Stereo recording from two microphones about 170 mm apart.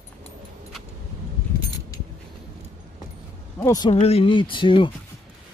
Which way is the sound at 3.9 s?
35° left (ahead or behind).